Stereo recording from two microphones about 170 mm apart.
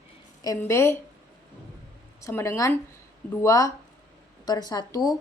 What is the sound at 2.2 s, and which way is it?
Speech, 15° left (ahead or behind).